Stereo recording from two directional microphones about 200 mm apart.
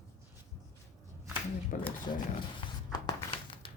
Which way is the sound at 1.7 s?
40° left (ahead or behind).